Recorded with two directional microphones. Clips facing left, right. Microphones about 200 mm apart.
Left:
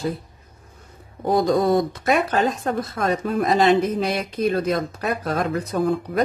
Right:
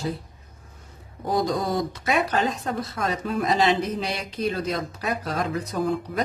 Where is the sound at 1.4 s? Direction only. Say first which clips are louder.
Left 7 dB; 55° left (ahead or behind).